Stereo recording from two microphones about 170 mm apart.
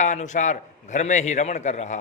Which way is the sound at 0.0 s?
45° left (ahead or behind).